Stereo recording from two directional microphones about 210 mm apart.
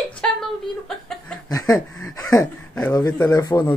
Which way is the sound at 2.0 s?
15° left (ahead or behind).